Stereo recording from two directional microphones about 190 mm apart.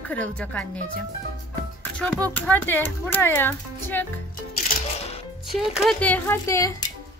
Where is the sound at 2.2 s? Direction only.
5° left (ahead or behind).